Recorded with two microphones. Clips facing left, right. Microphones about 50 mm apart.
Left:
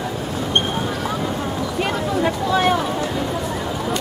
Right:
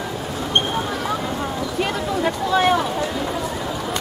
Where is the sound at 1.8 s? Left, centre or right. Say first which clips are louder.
Left 1 dB; centre.